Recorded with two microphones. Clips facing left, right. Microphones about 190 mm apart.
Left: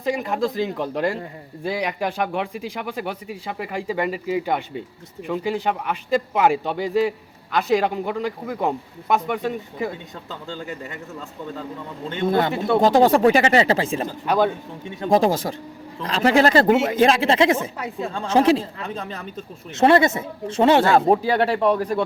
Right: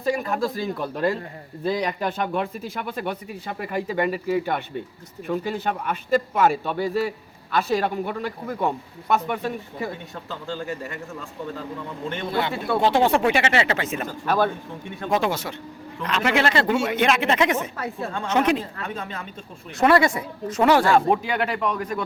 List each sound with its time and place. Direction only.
0.0 s speech: 20° left (ahead or behind)
12.3 s speech: 45° left (ahead or behind); by 14.1 s 30° left (ahead or behind)
14.3 s speech: 15° left (ahead or behind)
15.0 s speech: 35° left (ahead or behind)
17.7 s speech: 15° left (ahead or behind)
18.1 s speech: 30° left (ahead or behind)
19.7 s speech: 25° left (ahead or behind)
21.1 s speech: 35° left (ahead or behind)